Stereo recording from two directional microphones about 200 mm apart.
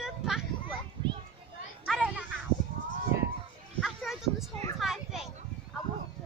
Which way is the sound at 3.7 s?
Centre (ahead or behind).